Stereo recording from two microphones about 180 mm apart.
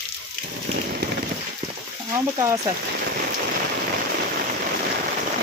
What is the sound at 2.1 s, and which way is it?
Speech, 15° right (ahead or behind).